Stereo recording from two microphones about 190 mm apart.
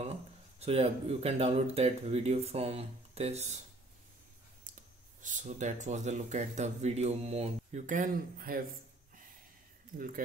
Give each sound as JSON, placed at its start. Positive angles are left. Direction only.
{"t": 0.0, "sound": "speech", "side_deg": -35}
{"t": 4.7, "sound": "a sound", "side_deg": -45}
{"t": 5.2, "sound": "speech", "side_deg": -40}
{"t": 9.9, "sound": "speech", "side_deg": -45}